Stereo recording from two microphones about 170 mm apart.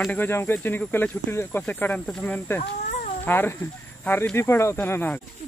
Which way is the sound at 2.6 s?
45° left (ahead or behind).